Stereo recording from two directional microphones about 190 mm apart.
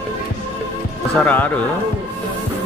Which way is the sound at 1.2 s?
10° left (ahead or behind).